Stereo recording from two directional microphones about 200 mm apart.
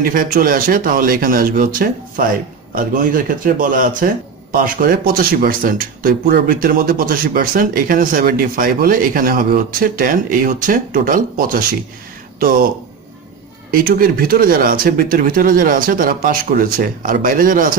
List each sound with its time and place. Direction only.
0.0 s speech: 45° right (ahead or behind)
13.7 s speech: 45° right (ahead or behind)